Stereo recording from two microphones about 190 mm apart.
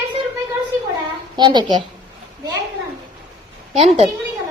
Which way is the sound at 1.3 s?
25° right (ahead or behind).